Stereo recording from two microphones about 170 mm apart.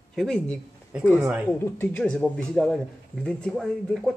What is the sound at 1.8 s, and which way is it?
Speech, 5° left (ahead or behind).